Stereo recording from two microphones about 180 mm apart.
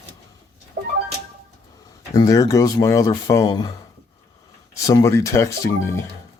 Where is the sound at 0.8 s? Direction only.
45° right (ahead or behind).